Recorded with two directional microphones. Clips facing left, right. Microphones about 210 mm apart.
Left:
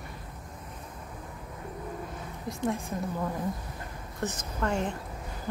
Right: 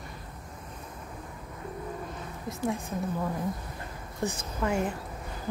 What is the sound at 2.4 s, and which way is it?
A woman's voice, centre (ahead or behind).